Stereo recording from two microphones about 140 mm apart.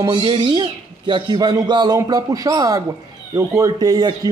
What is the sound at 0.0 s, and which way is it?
Speech, 35° right (ahead or behind).